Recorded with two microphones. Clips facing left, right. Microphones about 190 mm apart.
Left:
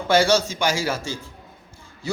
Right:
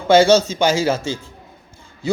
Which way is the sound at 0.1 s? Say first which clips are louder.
Right 6 dB; 20° right (ahead or behind).